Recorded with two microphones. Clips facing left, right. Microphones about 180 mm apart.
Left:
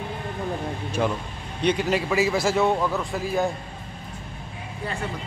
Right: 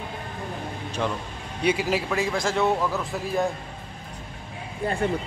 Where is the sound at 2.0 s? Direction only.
5° left (ahead or behind).